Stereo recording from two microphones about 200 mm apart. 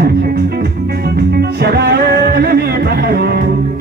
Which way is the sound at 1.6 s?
55° right (ahead or behind).